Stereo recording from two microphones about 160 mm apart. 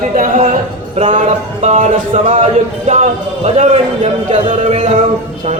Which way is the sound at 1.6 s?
45° right (ahead or behind).